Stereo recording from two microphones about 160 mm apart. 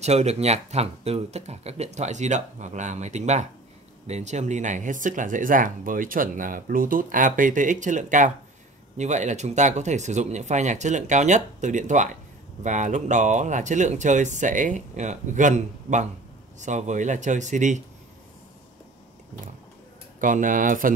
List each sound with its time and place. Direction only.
0.0 s speech: 45° right (ahead or behind)
20.2 s speech: 55° right (ahead or behind)